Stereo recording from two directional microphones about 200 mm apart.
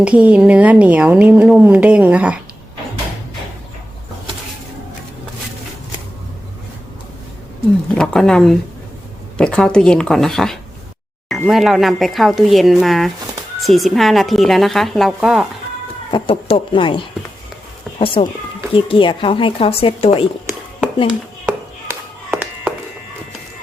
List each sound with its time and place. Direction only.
0.0 s a woman's voice: 5° right (ahead or behind)
7.9 s a woman's voice: 5° left (ahead or behind)
16.1 s speech: 25° left (ahead or behind)
18.0 s speech: 25° left (ahead or behind)
21.4 s chop: 10° right (ahead or behind)